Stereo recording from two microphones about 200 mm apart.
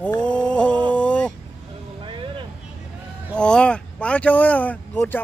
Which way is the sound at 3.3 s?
5° left (ahead or behind).